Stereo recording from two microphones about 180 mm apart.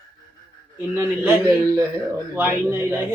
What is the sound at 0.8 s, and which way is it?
A man's voice, 15° right (ahead or behind).